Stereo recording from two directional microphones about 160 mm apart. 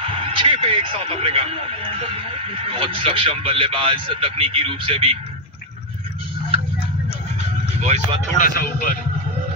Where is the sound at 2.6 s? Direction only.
35° right (ahead or behind).